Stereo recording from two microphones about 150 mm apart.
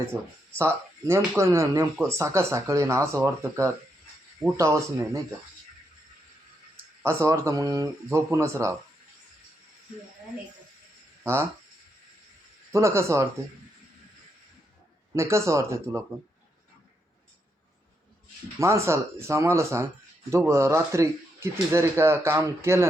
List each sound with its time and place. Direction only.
0.1 s speech: 15° right (ahead or behind)
7.0 s speech: 15° right (ahead or behind)
11.2 s speech: 15° right (ahead or behind)
12.7 s speech: 20° right (ahead or behind)
15.1 s speech: 20° right (ahead or behind)
18.6 s speech: 20° right (ahead or behind)